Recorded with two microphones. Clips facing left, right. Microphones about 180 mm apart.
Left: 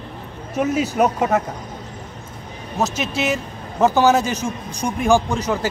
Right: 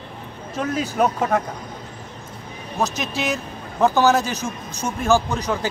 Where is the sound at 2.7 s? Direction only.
5° left (ahead or behind).